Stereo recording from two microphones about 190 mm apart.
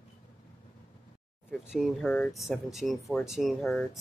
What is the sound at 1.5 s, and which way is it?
Speech, centre (ahead or behind).